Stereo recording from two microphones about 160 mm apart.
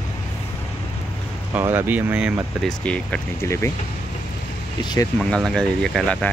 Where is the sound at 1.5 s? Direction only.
15° right (ahead or behind).